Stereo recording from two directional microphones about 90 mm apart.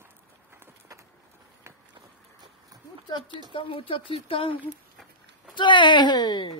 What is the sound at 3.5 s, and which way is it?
Speech, 75° left (ahead or behind).